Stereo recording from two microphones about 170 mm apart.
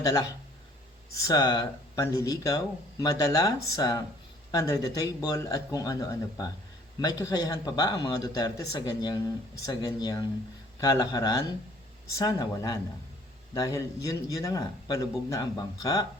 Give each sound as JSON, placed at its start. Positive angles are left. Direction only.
{"t": 0.0, "sound": "speech", "side_deg": 20}